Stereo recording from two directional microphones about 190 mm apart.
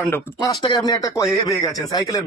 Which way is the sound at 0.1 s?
20° left (ahead or behind).